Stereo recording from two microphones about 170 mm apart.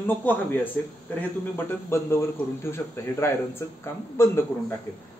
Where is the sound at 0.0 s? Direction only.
10° left (ahead or behind).